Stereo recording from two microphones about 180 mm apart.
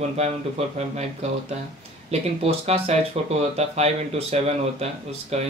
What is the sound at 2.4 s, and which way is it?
Speech, 35° right (ahead or behind).